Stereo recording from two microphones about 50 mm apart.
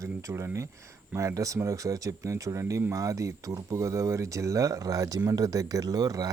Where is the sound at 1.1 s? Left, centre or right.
Right.